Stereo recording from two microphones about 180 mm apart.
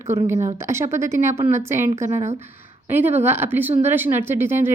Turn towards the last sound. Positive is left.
turn(degrees=-15)  # may be behind; listen again after turning